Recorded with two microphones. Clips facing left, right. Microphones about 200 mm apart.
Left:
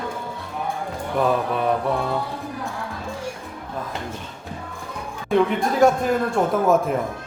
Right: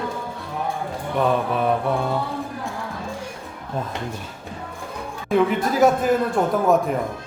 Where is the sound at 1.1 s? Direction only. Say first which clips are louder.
Even; centre (ahead or behind).